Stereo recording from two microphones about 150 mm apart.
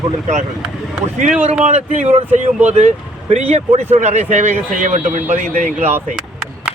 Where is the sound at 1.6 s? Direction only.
50° right (ahead or behind).